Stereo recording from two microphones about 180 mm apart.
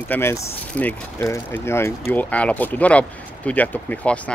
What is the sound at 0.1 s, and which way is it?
Speech, 15° left (ahead or behind).